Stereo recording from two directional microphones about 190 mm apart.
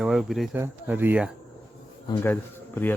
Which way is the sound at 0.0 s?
Centre (ahead or behind).